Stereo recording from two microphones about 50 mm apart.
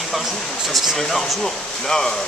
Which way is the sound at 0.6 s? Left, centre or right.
Centre.